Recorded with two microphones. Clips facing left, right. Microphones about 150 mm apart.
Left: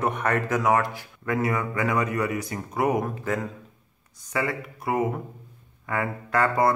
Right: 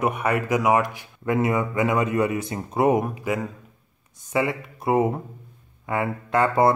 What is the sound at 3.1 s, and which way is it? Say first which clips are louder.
Speech: right 2 dB; 10° right (ahead or behind).